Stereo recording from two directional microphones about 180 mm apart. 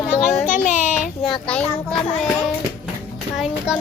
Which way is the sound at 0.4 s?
45° left (ahead or behind).